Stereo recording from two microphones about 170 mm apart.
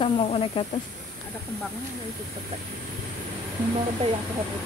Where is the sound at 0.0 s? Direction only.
30° left (ahead or behind).